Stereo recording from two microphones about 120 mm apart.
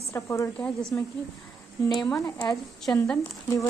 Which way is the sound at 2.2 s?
20° left (ahead or behind).